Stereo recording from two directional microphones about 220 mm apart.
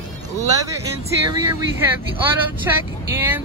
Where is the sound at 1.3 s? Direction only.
15° right (ahead or behind).